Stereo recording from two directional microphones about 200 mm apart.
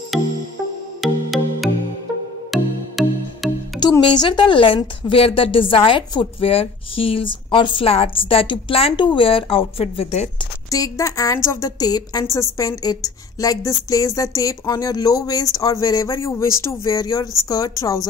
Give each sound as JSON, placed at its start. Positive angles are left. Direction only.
{"t": 0.1, "sound": "music", "side_deg": 0}
{"t": 3.8, "sound": "a woman's voice", "side_deg": 20}
{"t": 10.7, "sound": "a woman's voice", "side_deg": 15}